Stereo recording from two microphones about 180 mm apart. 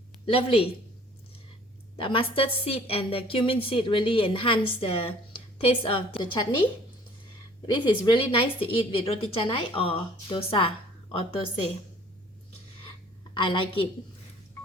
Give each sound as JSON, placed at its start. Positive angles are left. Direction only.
{"t": 0.3, "sound": "a woman's voice", "side_deg": 30}
{"t": 2.0, "sound": "a woman's voice", "side_deg": 30}
{"t": 7.7, "sound": "a woman's voice", "side_deg": 25}
{"t": 13.3, "sound": "a woman's voice", "side_deg": 30}